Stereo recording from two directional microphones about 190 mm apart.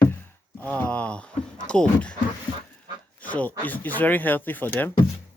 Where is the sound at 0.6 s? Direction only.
10° left (ahead or behind).